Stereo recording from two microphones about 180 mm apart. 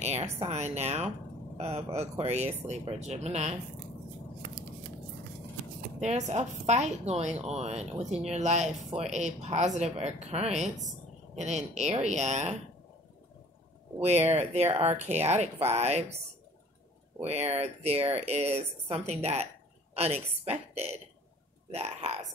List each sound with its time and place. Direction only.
0.0 s speech: 35° right (ahead or behind)
5.9 s speech: 40° right (ahead or behind)
14.0 s speech: 40° right (ahead or behind)
17.2 s speech: 35° right (ahead or behind)
19.0 s a sound: 35° right (ahead or behind)
20.4 s speech: 35° right (ahead or behind)